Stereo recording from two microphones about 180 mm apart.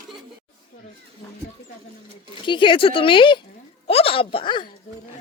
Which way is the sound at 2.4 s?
25° left (ahead or behind).